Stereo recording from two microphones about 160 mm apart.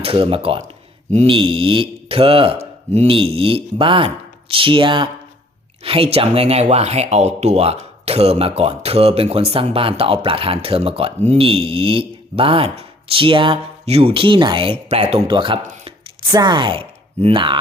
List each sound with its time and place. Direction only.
0.0 s speech: 35° right (ahead or behind)
15.6 s a sound: 50° right (ahead or behind)
16.3 s speech: 25° right (ahead or behind)